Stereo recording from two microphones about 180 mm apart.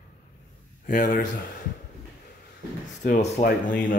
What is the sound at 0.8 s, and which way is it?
Speech, 50° left (ahead or behind).